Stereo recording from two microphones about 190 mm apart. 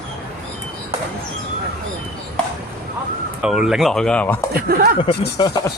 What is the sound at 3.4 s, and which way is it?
Speech, 5° right (ahead or behind).